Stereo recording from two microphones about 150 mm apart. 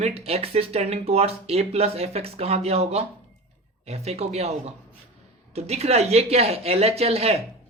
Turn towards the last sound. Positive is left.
turn(degrees=-40)  # may be behind; listen again after turning